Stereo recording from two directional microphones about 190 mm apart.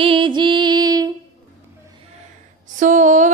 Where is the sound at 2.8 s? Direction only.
40° right (ahead or behind).